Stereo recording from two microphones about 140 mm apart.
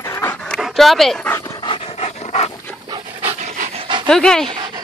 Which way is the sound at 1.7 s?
45° left (ahead or behind).